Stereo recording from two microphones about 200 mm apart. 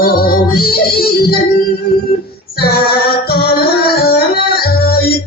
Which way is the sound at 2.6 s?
50° left (ahead or behind).